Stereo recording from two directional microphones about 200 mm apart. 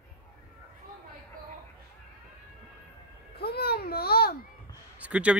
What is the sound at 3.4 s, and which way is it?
Babbling, 50° left (ahead or behind).